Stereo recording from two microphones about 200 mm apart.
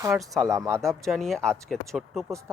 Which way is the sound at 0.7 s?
15° right (ahead or behind).